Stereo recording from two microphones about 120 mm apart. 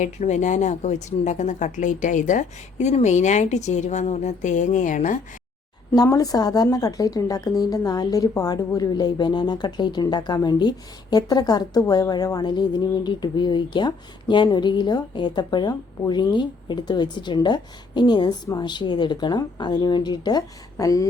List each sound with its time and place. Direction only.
0.0 s speech: 85° left
5.9 s speech: 30° left (ahead or behind)